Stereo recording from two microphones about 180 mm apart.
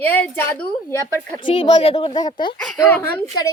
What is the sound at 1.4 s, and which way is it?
Speech, 25° left (ahead or behind).